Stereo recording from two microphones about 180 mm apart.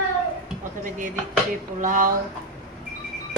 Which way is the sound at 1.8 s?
45° right (ahead or behind).